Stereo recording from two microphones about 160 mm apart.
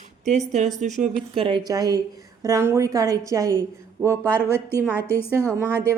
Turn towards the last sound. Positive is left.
turn(degrees=10)  # may be behind; listen again after turning